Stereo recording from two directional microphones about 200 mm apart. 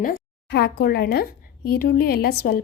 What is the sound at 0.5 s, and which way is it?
Speech, 55° left (ahead or behind).